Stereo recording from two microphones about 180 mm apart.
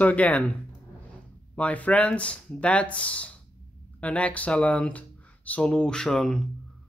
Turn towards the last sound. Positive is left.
turn(degrees=0)  # may be behind; listen again after turning